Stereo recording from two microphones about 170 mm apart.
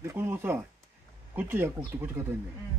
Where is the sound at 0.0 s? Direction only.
15° right (ahead or behind).